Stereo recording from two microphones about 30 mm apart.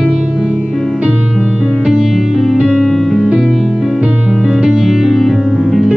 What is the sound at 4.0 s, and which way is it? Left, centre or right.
Music, right.